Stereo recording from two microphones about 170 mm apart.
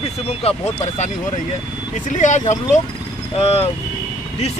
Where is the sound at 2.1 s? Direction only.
45° left (ahead or behind).